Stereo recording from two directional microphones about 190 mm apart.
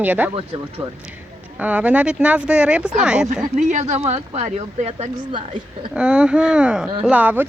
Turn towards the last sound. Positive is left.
turn(degrees=-10)  # may be behind; listen again after turning